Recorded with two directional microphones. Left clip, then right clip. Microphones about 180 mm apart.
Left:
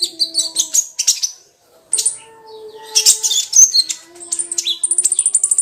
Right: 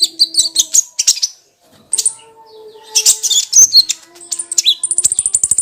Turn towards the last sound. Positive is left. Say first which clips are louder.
# right 2 dB
turn(degrees=-20)  # may be behind; listen again after turning